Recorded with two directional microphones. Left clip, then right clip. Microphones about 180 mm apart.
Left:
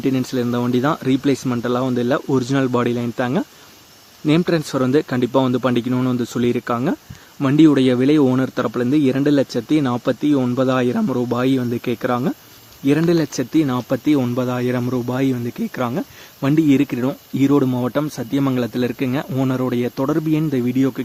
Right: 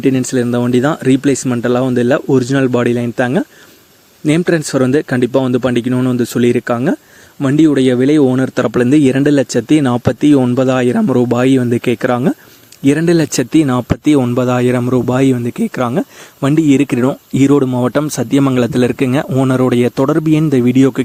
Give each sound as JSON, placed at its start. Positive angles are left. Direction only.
{"t": 0.0, "sound": "speech", "side_deg": -35}
{"t": 8.5, "sound": "speech", "side_deg": -45}